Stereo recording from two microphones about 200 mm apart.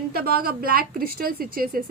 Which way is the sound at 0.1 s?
50° right (ahead or behind).